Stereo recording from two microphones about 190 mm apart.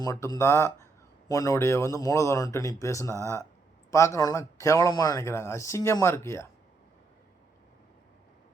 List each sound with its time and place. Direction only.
0.0 s speech: 20° left (ahead or behind)